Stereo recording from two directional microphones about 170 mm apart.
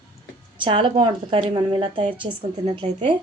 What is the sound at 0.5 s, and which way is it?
A woman's voice, 30° right (ahead or behind).